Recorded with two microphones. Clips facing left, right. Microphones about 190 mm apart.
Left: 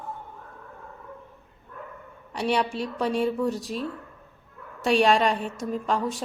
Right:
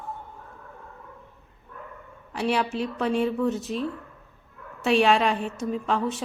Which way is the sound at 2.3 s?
Centre (ahead or behind).